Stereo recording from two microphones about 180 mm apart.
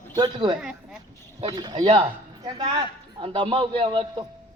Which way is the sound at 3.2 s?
30° right (ahead or behind).